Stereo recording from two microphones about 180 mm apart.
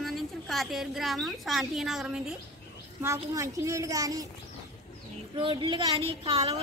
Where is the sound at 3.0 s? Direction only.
15° right (ahead or behind).